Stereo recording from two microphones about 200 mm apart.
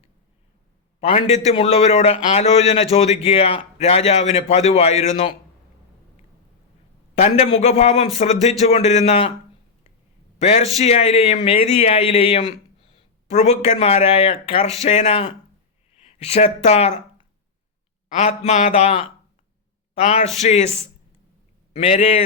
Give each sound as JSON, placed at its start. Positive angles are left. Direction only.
{"t": 1.0, "sound": "a man's voice", "side_deg": 35}
{"t": 7.2, "sound": "a man's voice", "side_deg": 35}
{"t": 10.4, "sound": "a man's voice", "side_deg": 30}